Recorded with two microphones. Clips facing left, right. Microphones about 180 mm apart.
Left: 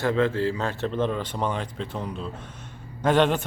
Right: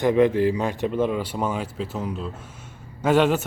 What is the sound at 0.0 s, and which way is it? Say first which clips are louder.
A man's voice: right 5 dB; 15° right (ahead or behind).